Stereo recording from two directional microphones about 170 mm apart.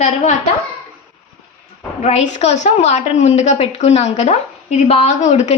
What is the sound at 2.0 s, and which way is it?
A woman's voice, 45° left (ahead or behind).